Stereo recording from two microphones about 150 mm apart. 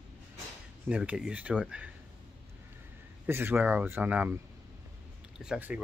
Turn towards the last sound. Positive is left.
turn(degrees=-10)  # may be behind; listen again after turning